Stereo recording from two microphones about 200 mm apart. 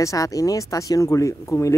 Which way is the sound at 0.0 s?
15° left (ahead or behind).